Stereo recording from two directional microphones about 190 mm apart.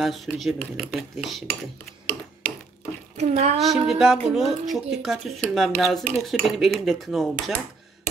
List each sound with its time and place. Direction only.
0.0 s speech: centre (ahead or behind)
3.2 s speech: 35° right (ahead or behind)
3.5 s speech: centre (ahead or behind)